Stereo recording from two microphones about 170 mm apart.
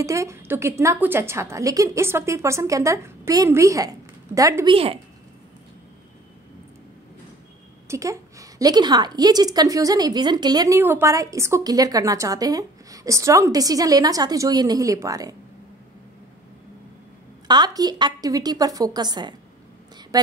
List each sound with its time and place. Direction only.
0.0 s a woman's voice: 20° right (ahead or behind)
4.7 s a woman's voice: 35° right (ahead or behind)
7.9 s a woman's voice: 20° right (ahead or behind)
17.5 s a woman's voice: 25° right (ahead or behind)